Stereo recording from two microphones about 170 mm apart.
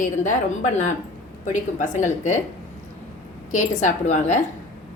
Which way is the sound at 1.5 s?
45° left (ahead or behind).